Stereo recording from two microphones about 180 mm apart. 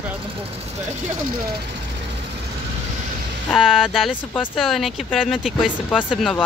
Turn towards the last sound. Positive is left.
turn(degrees=-5)  # may be behind; listen again after turning